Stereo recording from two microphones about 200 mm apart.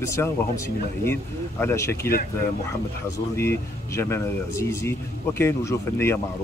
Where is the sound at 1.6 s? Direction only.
15° left (ahead or behind).